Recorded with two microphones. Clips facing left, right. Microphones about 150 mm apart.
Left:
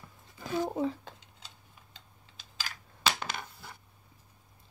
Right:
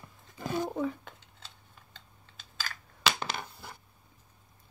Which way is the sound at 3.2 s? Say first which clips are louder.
Right 2 dB; 30° right (ahead or behind).